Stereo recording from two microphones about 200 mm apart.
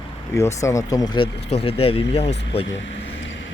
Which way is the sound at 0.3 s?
15° left (ahead or behind).